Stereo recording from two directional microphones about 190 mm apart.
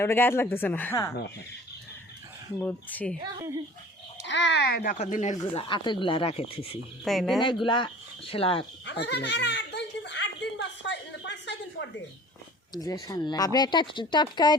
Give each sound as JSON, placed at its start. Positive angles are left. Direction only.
{"t": 0.0, "sound": "speech", "side_deg": 10}
{"t": 2.6, "sound": "speech", "side_deg": 10}
{"t": 4.3, "sound": "a child's voice", "side_deg": 70}
{"t": 4.9, "sound": "speech", "side_deg": 40}
{"t": 5.5, "sound": "speech", "side_deg": 25}
{"t": 7.0, "sound": "speech", "side_deg": 0}
{"t": 7.4, "sound": "speech", "side_deg": 25}
{"t": 8.9, "sound": "chuckle", "side_deg": 60}
{"t": 12.7, "sound": "speech", "side_deg": 20}